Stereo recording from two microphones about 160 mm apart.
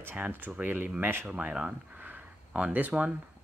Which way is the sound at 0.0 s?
10° right (ahead or behind).